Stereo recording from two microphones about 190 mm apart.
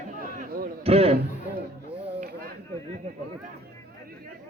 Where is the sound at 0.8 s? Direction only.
30° right (ahead or behind).